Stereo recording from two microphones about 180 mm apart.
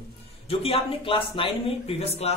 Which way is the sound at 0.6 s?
30° left (ahead or behind).